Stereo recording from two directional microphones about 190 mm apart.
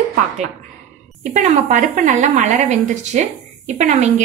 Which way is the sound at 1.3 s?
40° right (ahead or behind).